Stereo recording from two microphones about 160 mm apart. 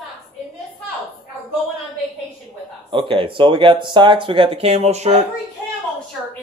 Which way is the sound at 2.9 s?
35° right (ahead or behind).